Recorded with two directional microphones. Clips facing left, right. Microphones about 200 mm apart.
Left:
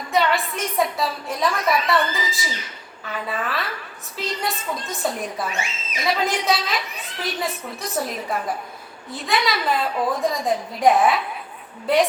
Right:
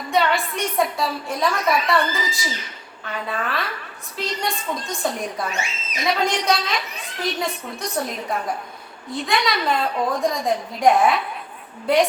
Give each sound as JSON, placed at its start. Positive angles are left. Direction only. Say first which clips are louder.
{"t": 0.1, "sound": "a woman's voice", "louder": "even", "side_deg": 0}